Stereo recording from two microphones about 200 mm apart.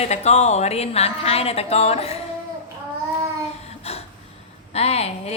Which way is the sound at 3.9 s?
30° left (ahead or behind).